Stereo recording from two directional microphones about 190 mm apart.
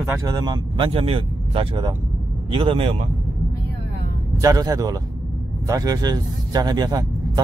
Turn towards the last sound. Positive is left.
turn(degrees=-20)  # may be behind; listen again after turning